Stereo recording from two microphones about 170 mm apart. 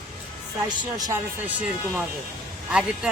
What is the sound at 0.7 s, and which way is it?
Speech, 20° right (ahead or behind).